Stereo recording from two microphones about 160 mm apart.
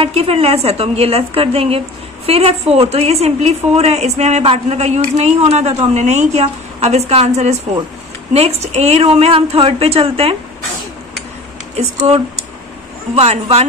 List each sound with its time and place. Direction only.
0.0 s a woman's voice: 40° right (ahead or behind)
13.1 s a woman's voice: 40° right (ahead or behind)